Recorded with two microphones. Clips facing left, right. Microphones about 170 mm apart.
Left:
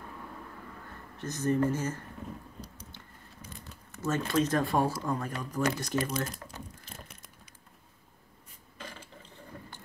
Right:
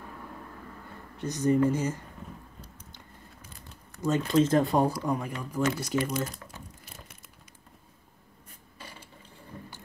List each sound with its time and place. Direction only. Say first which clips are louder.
1.1 s speech: right 4 dB; 15° right (ahead or behind)
4.0 s speech: right 4 dB; 20° right (ahead or behind); by 6.1 s 5° right (ahead or behind)